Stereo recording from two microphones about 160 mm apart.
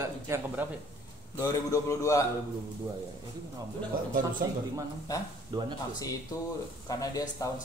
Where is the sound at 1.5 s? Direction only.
20° left (ahead or behind).